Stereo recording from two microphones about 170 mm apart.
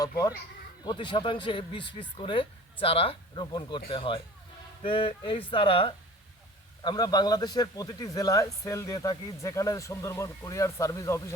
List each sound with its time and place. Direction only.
0.9 s a man's voice: 25° left (ahead or behind)